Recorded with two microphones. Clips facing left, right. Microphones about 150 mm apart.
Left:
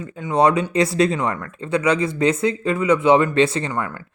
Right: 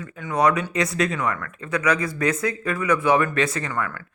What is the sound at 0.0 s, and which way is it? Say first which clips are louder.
Speech: left 4 dB; 20° left (ahead or behind).